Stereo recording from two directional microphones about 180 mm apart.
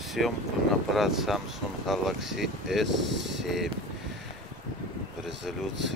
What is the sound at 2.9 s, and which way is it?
Speech, 85° right.